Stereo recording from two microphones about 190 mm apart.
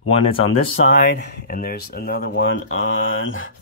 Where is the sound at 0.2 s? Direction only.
30° left (ahead or behind).